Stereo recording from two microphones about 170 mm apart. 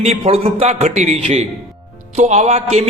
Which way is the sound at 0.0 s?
40° right (ahead or behind).